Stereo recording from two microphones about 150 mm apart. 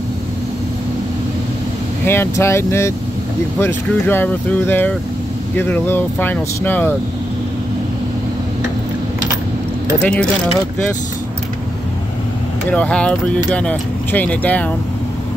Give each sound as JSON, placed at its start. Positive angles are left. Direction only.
{"t": 2.0, "sound": "speech", "side_deg": 15}
{"t": 10.0, "sound": "speech", "side_deg": 10}
{"t": 12.7, "sound": "speech", "side_deg": 10}